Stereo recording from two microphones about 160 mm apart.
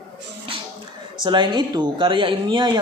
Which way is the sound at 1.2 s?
30° right (ahead or behind).